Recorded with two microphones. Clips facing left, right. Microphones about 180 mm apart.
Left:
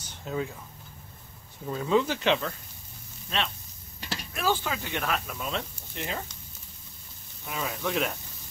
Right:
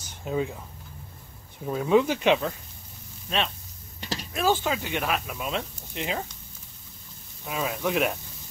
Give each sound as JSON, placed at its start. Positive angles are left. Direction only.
{"t": 0.2, "sound": "speech", "side_deg": -20}
{"t": 1.7, "sound": "speech", "side_deg": -15}
{"t": 4.0, "sound": "speech", "side_deg": -20}
{"t": 7.4, "sound": "speech", "side_deg": -15}